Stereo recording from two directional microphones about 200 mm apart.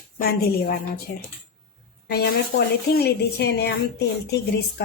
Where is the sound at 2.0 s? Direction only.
50° left (ahead or behind).